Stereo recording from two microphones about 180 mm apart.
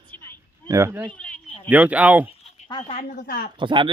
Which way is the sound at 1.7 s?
10° right (ahead or behind).